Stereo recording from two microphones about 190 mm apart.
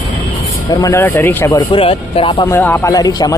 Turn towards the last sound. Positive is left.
turn(degrees=20)  # may be behind; listen again after turning